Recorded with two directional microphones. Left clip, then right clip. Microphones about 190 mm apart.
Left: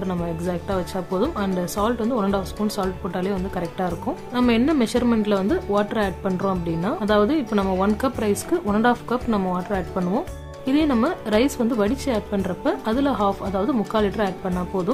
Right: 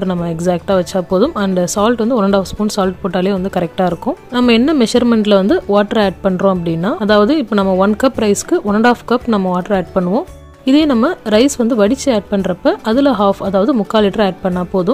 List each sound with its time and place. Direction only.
0.0 s speech: 35° right (ahead or behind)